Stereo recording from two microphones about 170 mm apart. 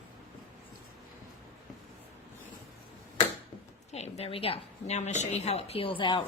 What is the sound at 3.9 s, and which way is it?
A woman's voice, 40° left (ahead or behind).